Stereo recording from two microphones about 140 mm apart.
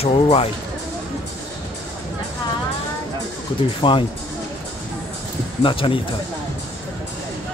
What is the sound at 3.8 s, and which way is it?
Speech, 35° left (ahead or behind).